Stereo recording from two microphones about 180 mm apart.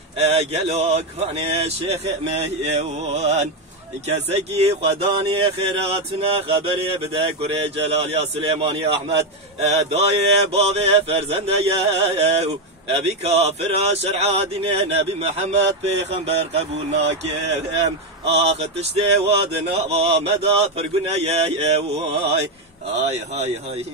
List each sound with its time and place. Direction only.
0.2 s speech: 35° right (ahead or behind)
17.7 s speech: 35° right (ahead or behind)